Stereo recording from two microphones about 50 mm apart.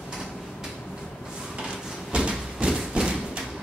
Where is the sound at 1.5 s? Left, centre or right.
Centre.